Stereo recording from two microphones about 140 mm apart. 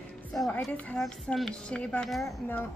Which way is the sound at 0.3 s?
5° left (ahead or behind).